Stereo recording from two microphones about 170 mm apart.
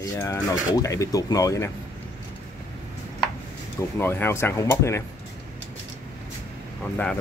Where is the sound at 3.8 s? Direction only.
15° left (ahead or behind).